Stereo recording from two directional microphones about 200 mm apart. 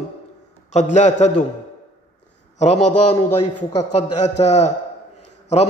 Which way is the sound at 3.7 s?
35° left (ahead or behind).